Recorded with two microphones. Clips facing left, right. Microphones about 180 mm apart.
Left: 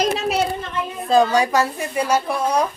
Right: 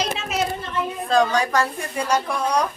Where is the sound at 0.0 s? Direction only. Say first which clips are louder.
Left 6 dB; 40° left (ahead or behind).